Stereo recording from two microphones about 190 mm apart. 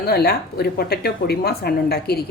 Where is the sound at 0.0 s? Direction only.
55° left (ahead or behind).